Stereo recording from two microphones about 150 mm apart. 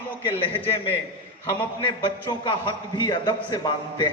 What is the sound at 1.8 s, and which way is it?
A man's voice, 30° left (ahead or behind).